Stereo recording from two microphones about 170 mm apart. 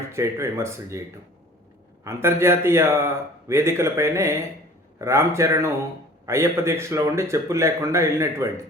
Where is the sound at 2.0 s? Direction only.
15° right (ahead or behind).